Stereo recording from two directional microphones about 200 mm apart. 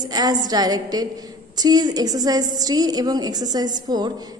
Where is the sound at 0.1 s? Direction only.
20° right (ahead or behind).